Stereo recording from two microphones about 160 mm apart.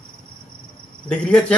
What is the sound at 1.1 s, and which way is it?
Speech, 5° left (ahead or behind).